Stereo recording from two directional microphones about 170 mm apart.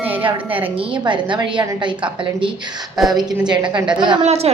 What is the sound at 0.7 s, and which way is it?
A woman's voice, 30° right (ahead or behind).